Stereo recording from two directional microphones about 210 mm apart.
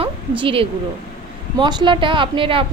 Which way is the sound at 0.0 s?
25° right (ahead or behind).